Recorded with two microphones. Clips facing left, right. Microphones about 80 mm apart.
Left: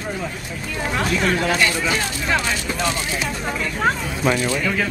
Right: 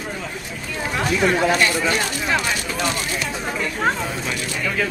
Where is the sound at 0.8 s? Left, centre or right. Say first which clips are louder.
Right 1 dB; centre.